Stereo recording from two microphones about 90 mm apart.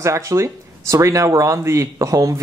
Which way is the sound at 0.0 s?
35° right (ahead or behind).